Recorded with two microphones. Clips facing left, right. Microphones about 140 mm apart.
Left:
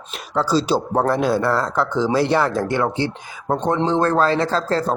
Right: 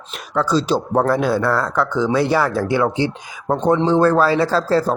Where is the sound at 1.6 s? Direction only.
25° left (ahead or behind).